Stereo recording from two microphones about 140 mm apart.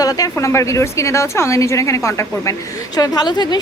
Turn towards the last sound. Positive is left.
turn(degrees=30)  # may be behind; listen again after turning